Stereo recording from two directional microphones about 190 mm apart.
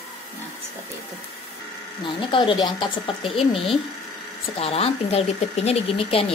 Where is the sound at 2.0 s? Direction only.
25° left (ahead or behind).